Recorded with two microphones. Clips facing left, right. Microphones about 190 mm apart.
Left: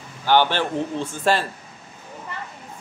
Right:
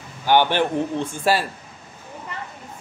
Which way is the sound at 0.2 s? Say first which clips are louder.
Right 1 dB; 15° right (ahead or behind).